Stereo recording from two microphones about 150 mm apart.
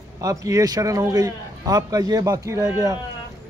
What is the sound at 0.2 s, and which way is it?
A man's voice, 25° right (ahead or behind).